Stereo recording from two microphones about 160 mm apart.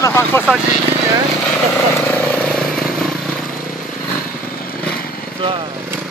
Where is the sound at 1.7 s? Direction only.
10° left (ahead or behind).